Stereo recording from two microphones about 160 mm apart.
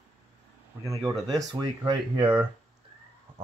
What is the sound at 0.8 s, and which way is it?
Speech, 20° right (ahead or behind).